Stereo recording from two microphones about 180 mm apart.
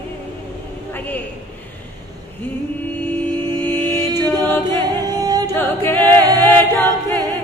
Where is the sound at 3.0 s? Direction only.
10° left (ahead or behind).